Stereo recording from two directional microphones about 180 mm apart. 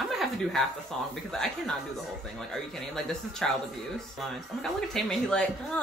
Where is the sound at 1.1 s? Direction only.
5° left (ahead or behind).